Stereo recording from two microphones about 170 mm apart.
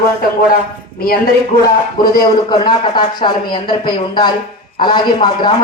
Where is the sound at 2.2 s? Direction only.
25° left (ahead or behind).